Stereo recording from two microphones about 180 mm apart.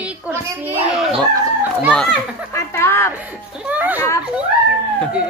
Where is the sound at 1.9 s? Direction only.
Centre (ahead or behind).